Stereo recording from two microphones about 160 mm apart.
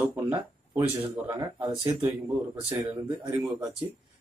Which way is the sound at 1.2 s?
25° right (ahead or behind).